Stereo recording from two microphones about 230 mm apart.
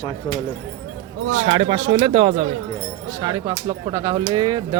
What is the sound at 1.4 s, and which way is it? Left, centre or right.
Speech, right.